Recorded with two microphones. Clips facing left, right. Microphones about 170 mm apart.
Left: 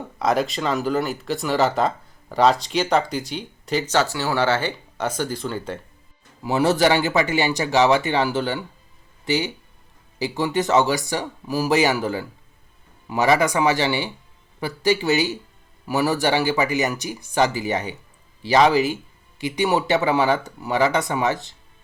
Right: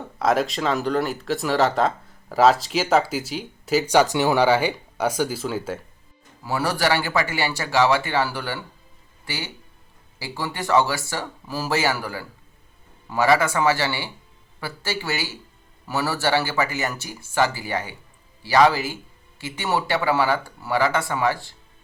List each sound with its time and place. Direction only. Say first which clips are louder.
0.2 s speech: even; centre (ahead or behind)
6.4 s speech: left 5 dB; 20° left (ahead or behind)